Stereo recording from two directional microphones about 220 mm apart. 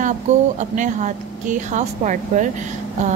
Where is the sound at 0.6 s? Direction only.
35° right (ahead or behind).